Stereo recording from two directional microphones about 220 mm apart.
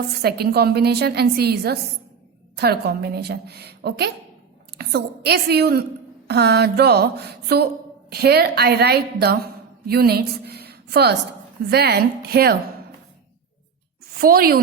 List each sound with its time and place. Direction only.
0.2 s a woman's voice: 45° right (ahead or behind)
14.2 s a woman's voice: 40° right (ahead or behind)